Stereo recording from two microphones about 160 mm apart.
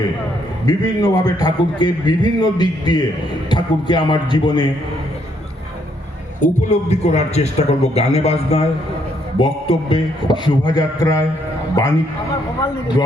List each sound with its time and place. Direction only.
0.6 s a man's voice: 25° left (ahead or behind)
6.4 s a man's voice: 45° left (ahead or behind); by 11.9 s 25° left (ahead or behind)